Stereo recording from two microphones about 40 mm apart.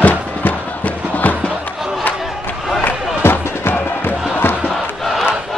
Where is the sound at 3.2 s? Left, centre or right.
Left.